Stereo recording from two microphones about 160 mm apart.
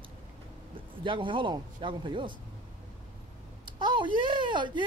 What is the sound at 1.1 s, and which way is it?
Speech, 30° right (ahead or behind).